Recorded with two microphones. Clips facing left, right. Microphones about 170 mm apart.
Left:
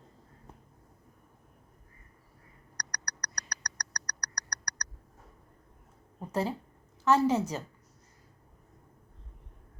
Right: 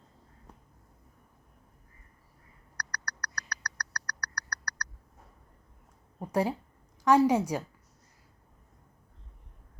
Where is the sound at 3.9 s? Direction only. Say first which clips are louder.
Right 3 dB; 20° left (ahead or behind).